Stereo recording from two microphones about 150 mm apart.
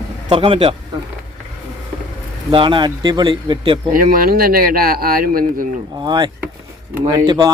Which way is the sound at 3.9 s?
70° right (ahead or behind).